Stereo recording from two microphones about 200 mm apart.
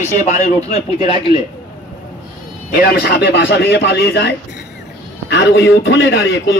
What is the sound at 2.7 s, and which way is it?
A man's voice, 50° left (ahead or behind).